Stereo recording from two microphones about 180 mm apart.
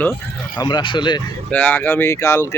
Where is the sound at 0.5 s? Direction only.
25° left (ahead or behind).